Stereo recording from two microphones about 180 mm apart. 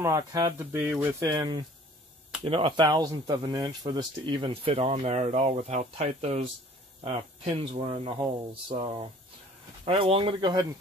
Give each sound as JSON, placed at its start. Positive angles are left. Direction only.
{"t": 0.0, "sound": "speech", "side_deg": -20}